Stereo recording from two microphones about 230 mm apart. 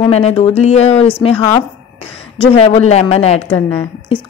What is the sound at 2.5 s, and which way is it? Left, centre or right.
Speech, left.